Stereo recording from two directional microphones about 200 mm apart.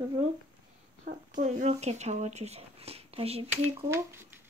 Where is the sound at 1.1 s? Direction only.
40° right (ahead or behind).